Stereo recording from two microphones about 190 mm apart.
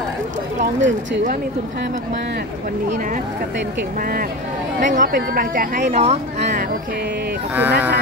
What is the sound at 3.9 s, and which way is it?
Speech, 50° right (ahead or behind).